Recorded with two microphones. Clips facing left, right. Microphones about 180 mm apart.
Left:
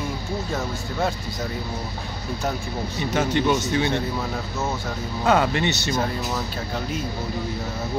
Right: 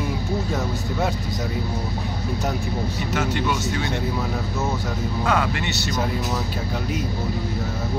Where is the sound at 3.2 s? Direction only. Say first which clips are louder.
Left 4 dB; 25° left (ahead or behind).